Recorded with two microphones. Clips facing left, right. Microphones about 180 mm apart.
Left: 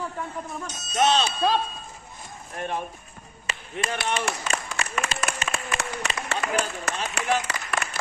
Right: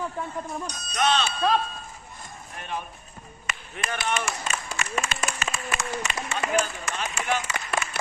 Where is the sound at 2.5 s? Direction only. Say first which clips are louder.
Left 4 dB; 45° left (ahead or behind).